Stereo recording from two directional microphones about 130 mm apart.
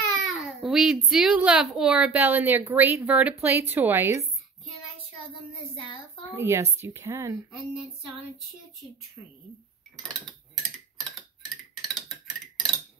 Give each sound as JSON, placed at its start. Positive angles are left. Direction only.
{"t": 0.1, "sound": "a child's voice", "side_deg": 0}
{"t": 5.3, "sound": "a child's voice", "side_deg": 40}
{"t": 6.3, "sound": "a woman's voice", "side_deg": -20}
{"t": 7.5, "sound": "a sound", "side_deg": -5}
{"t": 11.1, "sound": "tick-tock", "side_deg": 0}